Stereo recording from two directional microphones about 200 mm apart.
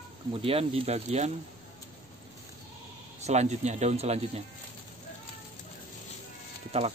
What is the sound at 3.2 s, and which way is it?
Speech, 35° right (ahead or behind).